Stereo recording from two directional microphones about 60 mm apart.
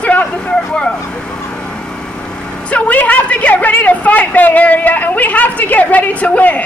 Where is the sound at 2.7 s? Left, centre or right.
Left.